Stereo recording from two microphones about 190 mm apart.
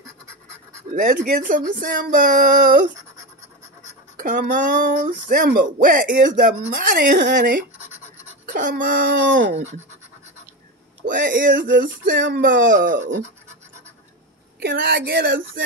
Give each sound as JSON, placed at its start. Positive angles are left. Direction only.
{"t": 0.9, "sound": "speech", "side_deg": -45}
{"t": 4.2, "sound": "speech", "side_deg": -45}
{"t": 9.1, "sound": "speech", "side_deg": -70}
{"t": 11.0, "sound": "speech", "side_deg": -45}
{"t": 12.1, "sound": "speech", "side_deg": -70}
{"t": 12.4, "sound": "speech", "side_deg": -50}
{"t": 14.6, "sound": "speech", "side_deg": -50}